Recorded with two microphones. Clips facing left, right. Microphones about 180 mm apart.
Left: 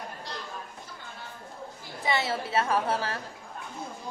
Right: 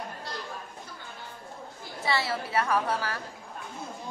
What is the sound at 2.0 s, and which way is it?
A woman's voice, 20° left (ahead or behind).